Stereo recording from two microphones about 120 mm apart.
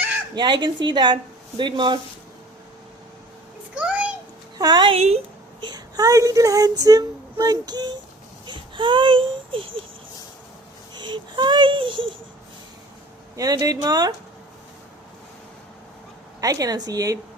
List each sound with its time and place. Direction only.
0.3 s female singing: 40° right (ahead or behind)
3.8 s a sound: 10° right (ahead or behind)
4.5 s a woman's voice: 35° right (ahead or behind)
4.9 s a woman's voice: 60° right (ahead or behind)
5.5 s female singing: 35° right (ahead or behind)
8.4 s speech: 40° right (ahead or behind)
10.9 s female singing: 40° right (ahead or behind)
13.3 s female singing: 30° right (ahead or behind)
16.4 s female singing: 30° right (ahead or behind)